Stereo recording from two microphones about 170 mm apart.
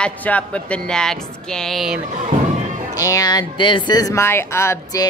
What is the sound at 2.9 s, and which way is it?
Speech, 20° left (ahead or behind).